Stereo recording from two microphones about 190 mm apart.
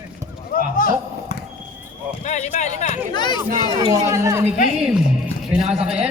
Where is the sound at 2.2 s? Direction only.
35° left (ahead or behind).